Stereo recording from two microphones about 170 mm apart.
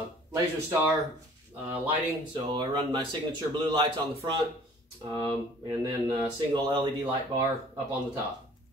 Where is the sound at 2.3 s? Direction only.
25° right (ahead or behind).